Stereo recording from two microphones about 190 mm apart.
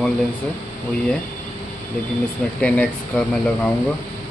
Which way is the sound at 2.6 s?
5° left (ahead or behind).